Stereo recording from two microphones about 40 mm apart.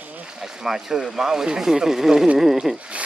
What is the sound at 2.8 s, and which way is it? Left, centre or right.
Rub, right.